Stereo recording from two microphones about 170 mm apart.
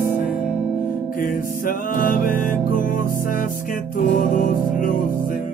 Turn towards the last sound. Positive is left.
turn(degrees=50)  # may be behind; listen again after turning